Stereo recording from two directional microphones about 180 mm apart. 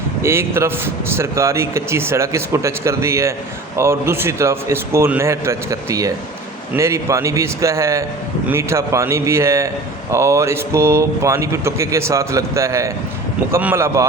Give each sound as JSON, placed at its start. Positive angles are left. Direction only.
{"t": 0.2, "sound": "speech", "side_deg": -15}